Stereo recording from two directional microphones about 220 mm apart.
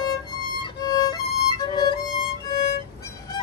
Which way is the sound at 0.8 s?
20° left (ahead or behind).